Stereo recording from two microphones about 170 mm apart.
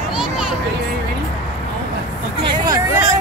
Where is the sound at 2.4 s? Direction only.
20° right (ahead or behind).